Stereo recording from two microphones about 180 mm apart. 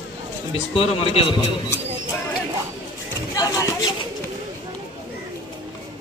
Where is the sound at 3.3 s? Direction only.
20° left (ahead or behind).